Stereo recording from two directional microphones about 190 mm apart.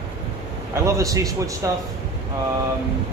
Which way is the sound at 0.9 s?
15° right (ahead or behind).